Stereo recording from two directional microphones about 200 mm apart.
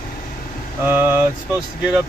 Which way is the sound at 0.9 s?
10° right (ahead or behind).